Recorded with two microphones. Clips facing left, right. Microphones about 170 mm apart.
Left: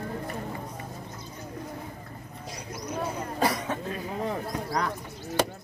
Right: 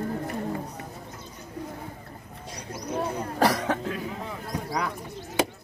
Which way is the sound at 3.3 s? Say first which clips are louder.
Right 4 dB; 80° right.